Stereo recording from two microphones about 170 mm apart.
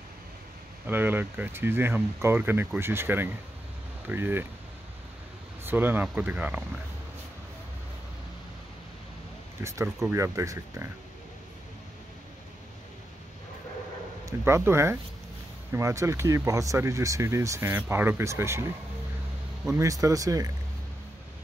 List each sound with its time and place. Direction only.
0.8 s speech: 10° right (ahead or behind)
5.6 s speech: 10° right (ahead or behind)
9.6 s speech: 15° right (ahead or behind)
14.2 s speech: 15° right (ahead or behind)
19.7 s speech: 20° right (ahead or behind)